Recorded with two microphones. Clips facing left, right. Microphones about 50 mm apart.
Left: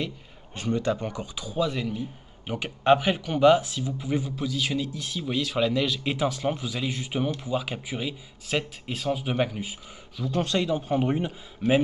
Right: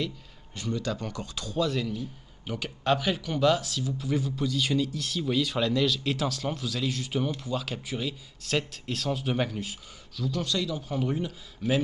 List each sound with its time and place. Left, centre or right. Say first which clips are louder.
0.6 s a man's voice: left 5 dB; left
4.4 s speech: right 1 dB; centre
10.2 s a man's voice: left 4 dB; left